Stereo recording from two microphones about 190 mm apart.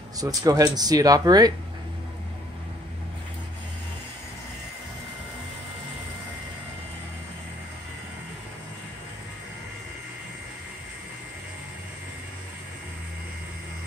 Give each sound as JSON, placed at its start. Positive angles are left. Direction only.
{"t": 0.2, "sound": "speech", "side_deg": -20}